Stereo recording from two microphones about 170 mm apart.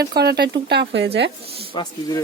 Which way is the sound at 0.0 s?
70° right (ahead or behind).